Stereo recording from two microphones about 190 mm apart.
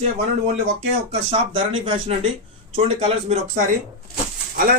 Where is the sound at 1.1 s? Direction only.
30° right (ahead or behind).